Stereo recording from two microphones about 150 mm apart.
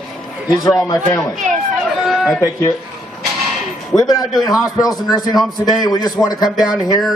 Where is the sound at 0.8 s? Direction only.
25° left (ahead or behind).